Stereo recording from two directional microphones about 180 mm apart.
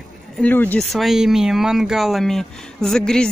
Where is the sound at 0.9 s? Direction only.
Centre (ahead or behind).